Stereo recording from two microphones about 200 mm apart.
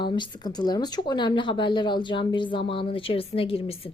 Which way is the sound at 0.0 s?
25° left (ahead or behind).